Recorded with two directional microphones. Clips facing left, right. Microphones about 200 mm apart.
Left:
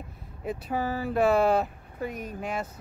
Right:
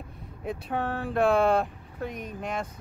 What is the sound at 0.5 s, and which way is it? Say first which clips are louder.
Speech: left 1 dB; 5° left (ahead or behind).